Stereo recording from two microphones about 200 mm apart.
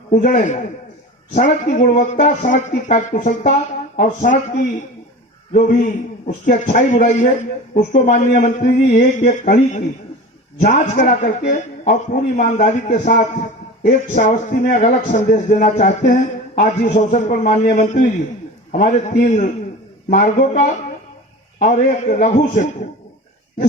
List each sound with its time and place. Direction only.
0.1 s speech: 45° left (ahead or behind)
6.4 s speech: 40° left (ahead or behind)